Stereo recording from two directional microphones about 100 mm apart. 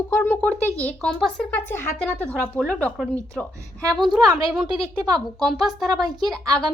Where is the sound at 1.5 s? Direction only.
25° left (ahead or behind); by 4.2 s centre (ahead or behind).